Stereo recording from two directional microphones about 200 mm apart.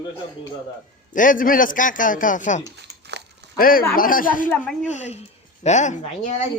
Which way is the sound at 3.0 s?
60° right (ahead or behind).